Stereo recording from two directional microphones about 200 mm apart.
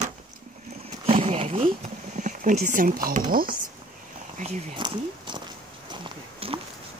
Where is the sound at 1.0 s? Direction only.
30° right (ahead or behind).